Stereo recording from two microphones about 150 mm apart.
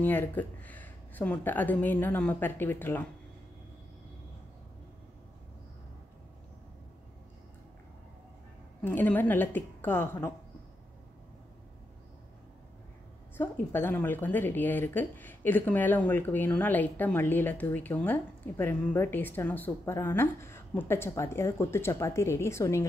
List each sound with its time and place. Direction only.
0.0 s speech: 10° left (ahead or behind)
8.8 s speech: 15° left (ahead or behind)
13.4 s speech: 15° left (ahead or behind)